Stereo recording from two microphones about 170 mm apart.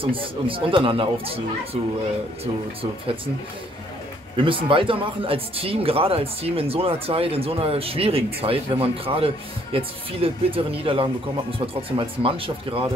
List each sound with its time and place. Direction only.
0.0 s speech: 30° right (ahead or behind)
4.4 s speech: 30° right (ahead or behind)